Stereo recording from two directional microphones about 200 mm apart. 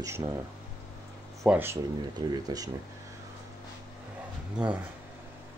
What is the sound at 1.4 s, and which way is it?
Speech, 10° right (ahead or behind).